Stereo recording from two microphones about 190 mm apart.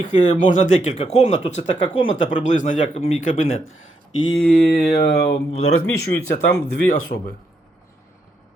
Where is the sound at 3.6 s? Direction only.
90° left.